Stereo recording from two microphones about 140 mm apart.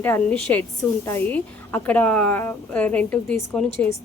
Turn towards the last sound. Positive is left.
turn(degrees=5)  # may be behind; listen again after turning